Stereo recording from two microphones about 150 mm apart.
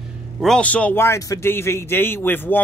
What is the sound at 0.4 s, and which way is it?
A man's voice, 5° left (ahead or behind).